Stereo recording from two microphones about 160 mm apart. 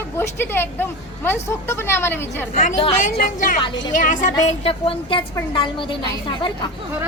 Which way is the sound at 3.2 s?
55° left (ahead or behind).